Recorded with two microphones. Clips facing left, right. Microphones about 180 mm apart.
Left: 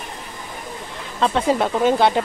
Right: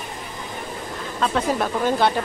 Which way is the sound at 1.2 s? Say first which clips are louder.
Left 3 dB; 25° left (ahead or behind).